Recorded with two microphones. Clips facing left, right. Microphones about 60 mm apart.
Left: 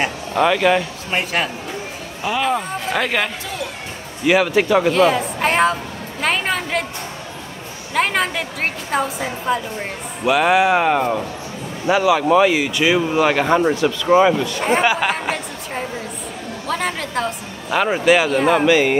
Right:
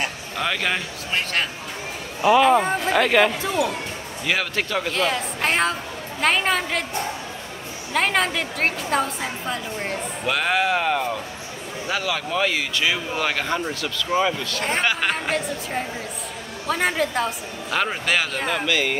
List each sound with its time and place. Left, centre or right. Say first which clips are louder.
0.4 s a woman's voice: left 9 dB; centre
2.2 s a woman's voice: right 5 dB; centre
4.3 s a woman's voice: left 9 dB; centre
7.9 s a woman's voice: left 2 dB; centre
13.6 s speech: left 10 dB; left
14.1 s a woman's voice: left 8 dB; centre
17.6 s speech: left 8 dB; centre
18.6 s speech: left 8 dB; left